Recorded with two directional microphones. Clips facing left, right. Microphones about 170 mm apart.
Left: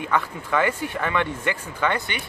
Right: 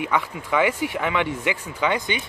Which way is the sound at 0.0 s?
15° right (ahead or behind).